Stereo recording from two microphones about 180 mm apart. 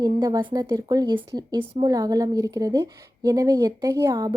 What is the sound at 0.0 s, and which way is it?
Speech, 25° right (ahead or behind).